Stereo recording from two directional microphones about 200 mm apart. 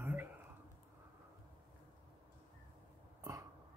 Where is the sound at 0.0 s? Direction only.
10° right (ahead or behind).